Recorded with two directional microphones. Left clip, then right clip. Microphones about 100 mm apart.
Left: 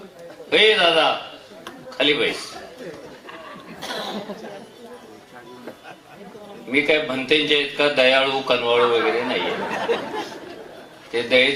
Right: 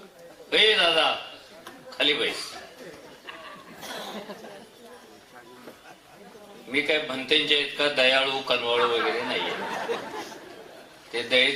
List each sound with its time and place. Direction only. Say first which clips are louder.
0.5 s a man's voice: left 5 dB; 10° left (ahead or behind)
3.2 s a sound: left 1 dB; 15° left (ahead or behind)
6.7 s a man's voice: left 6 dB; 15° left (ahead or behind)